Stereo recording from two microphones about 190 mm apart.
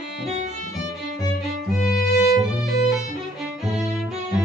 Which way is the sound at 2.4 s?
Centre (ahead or behind).